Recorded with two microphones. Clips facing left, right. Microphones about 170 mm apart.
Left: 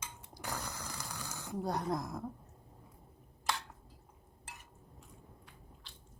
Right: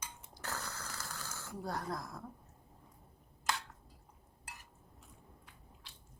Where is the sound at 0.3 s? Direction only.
15° left (ahead or behind).